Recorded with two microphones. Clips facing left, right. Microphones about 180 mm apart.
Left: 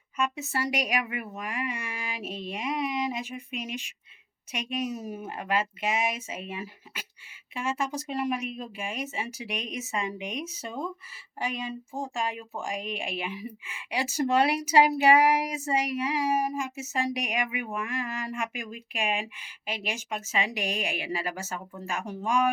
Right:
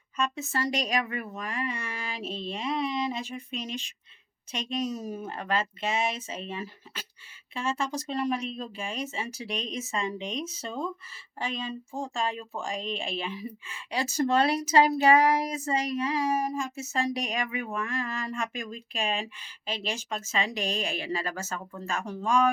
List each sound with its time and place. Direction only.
0.2 s speech: 10° left (ahead or behind)